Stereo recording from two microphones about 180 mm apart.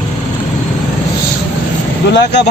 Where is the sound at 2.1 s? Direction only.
70° left (ahead or behind).